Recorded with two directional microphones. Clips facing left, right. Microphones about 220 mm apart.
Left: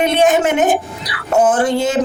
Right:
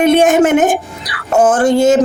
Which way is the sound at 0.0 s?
50° right (ahead or behind).